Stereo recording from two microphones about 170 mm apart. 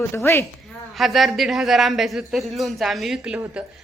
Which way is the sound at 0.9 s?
Centre (ahead or behind).